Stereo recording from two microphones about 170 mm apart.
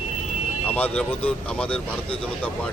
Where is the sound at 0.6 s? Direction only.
10° left (ahead or behind).